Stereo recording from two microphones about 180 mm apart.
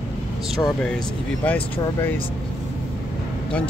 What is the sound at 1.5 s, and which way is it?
Speech, 10° left (ahead or behind).